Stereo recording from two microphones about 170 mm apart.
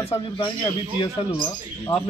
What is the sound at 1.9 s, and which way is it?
Speech, 35° left (ahead or behind).